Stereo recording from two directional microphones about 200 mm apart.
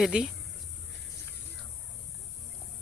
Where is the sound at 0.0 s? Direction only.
5° right (ahead or behind).